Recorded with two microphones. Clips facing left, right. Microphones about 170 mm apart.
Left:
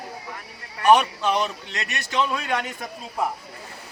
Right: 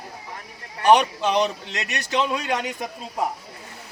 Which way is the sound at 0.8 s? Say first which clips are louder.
Right 1 dB; 30° right (ahead or behind).